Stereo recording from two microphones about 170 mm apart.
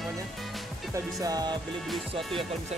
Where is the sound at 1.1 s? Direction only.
20° right (ahead or behind).